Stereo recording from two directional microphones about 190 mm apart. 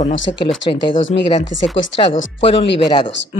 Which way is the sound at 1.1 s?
35° left (ahead or behind).